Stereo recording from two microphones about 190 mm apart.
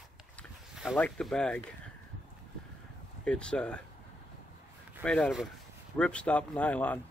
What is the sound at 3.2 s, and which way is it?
Speech, 5° left (ahead or behind).